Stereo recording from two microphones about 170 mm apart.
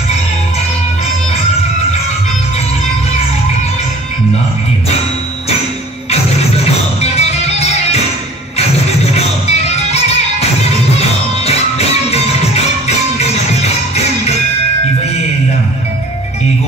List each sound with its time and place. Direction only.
7.0 s music: 40° left (ahead or behind)